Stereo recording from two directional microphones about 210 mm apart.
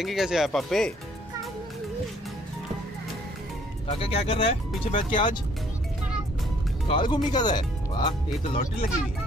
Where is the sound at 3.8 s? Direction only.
25° left (ahead or behind).